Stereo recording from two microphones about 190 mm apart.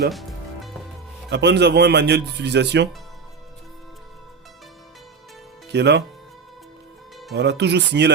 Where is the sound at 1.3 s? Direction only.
65° right (ahead or behind).